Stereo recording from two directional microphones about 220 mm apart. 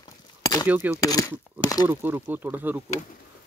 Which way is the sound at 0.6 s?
10° right (ahead or behind).